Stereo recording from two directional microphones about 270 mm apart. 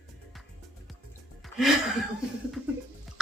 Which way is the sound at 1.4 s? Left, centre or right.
Centre.